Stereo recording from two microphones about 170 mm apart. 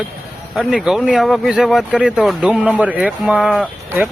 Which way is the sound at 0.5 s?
Centre (ahead or behind).